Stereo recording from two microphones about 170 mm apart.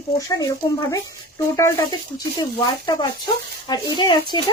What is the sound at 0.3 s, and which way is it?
Speech, 20° left (ahead or behind).